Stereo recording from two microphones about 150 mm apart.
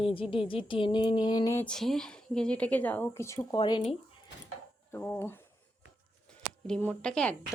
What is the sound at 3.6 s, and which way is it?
Speech, 30° left (ahead or behind).